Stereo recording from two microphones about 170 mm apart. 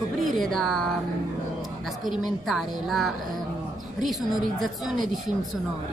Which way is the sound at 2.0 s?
Centre (ahead or behind).